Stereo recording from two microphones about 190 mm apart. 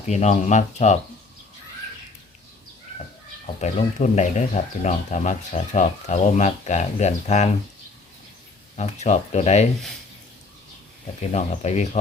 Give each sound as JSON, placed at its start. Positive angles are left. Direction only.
{"t": 0.1, "sound": "speech", "side_deg": 35}
{"t": 3.4, "sound": "speech", "side_deg": 40}
{"t": 8.7, "sound": "speech", "side_deg": 35}
{"t": 11.3, "sound": "speech", "side_deg": 35}